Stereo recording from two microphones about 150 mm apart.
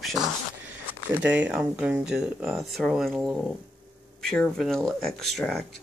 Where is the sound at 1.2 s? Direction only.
10° right (ahead or behind).